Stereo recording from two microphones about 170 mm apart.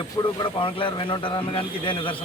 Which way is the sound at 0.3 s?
30° left (ahead or behind).